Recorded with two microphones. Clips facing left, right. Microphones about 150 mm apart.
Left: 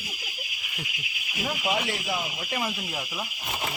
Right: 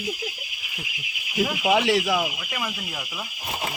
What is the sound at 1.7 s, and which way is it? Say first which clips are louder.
Speech: right 12 dB; 90° right.